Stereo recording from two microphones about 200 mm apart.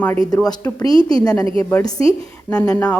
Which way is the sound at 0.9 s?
25° right (ahead or behind).